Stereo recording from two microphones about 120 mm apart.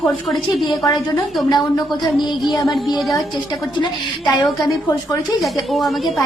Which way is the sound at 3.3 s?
40° left (ahead or behind).